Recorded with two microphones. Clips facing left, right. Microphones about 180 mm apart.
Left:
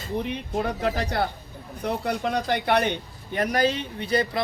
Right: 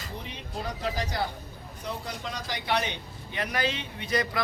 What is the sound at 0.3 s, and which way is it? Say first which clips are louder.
A man's voice: left 9 dB; 60° left (ahead or behind).